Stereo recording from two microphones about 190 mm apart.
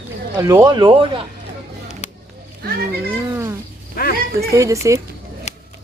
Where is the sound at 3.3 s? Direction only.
15° right (ahead or behind).